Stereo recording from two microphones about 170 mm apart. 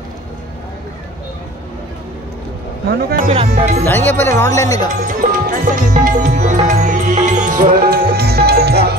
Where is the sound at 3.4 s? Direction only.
45° right (ahead or behind).